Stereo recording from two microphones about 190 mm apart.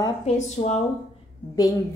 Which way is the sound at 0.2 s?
35° left (ahead or behind).